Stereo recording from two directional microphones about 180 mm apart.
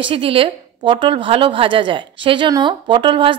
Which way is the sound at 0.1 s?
30° right (ahead or behind).